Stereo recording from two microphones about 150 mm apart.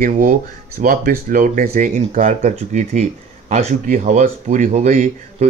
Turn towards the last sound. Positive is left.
turn(degrees=-55)  # may be behind; listen again after turning